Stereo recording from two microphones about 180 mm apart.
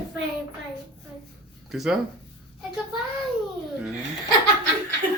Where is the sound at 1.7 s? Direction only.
Centre (ahead or behind).